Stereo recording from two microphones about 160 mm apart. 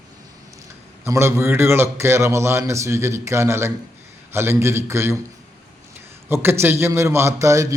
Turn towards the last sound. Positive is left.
turn(degrees=-20)  # may be behind; listen again after turning